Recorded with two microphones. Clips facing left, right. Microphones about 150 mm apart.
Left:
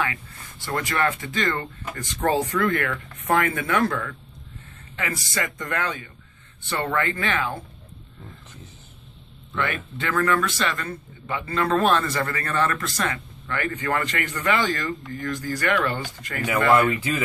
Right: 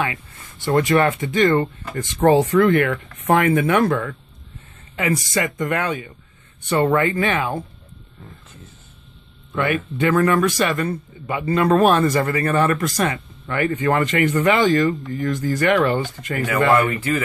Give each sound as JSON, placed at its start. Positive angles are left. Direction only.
{"t": 0.0, "sound": "speech", "side_deg": -20}
{"t": 9.5, "sound": "speech", "side_deg": -15}
{"t": 16.9, "sound": "speech", "side_deg": 15}